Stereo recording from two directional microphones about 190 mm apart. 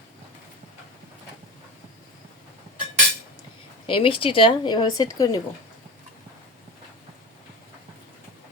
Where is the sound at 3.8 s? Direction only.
25° left (ahead or behind).